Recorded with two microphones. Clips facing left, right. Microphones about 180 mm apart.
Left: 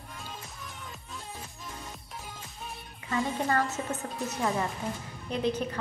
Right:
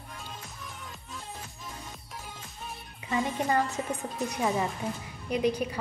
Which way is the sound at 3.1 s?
15° right (ahead or behind).